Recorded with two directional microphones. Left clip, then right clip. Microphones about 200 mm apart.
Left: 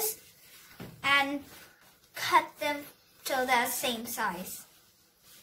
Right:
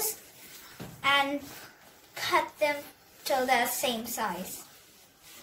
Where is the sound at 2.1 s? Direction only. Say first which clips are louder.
Left 2 dB; 15° left (ahead or behind).